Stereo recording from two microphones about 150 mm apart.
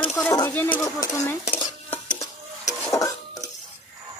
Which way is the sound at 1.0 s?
20° left (ahead or behind).